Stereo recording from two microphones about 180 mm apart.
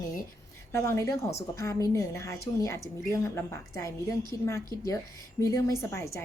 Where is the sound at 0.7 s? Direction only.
15° left (ahead or behind).